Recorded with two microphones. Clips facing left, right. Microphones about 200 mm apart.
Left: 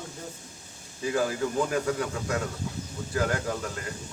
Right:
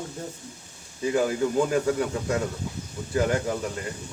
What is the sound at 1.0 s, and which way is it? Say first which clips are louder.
A man's voice: right 3 dB; 20° right (ahead or behind).